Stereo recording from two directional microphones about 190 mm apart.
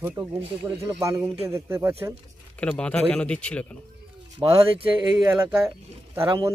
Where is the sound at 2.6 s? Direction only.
5° left (ahead or behind).